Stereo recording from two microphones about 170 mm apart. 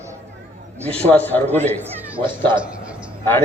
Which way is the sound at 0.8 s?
10° left (ahead or behind).